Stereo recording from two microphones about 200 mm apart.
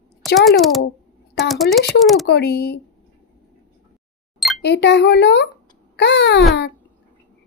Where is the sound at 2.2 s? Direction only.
55° left (ahead or behind).